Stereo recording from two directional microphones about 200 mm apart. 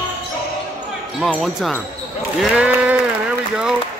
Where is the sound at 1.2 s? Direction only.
Centre (ahead or behind).